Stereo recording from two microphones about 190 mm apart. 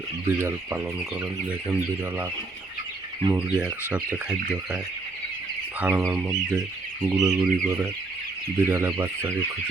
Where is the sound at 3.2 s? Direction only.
10° right (ahead or behind).